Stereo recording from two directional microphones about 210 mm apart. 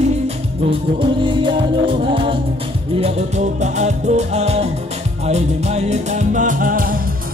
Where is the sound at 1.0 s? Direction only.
25° right (ahead or behind).